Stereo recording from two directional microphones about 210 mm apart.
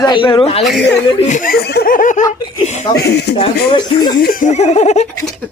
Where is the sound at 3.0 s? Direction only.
50° left (ahead or behind).